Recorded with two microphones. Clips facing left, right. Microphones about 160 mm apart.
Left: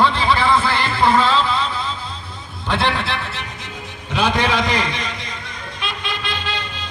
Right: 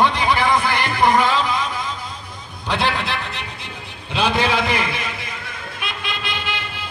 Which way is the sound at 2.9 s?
15° right (ahead or behind).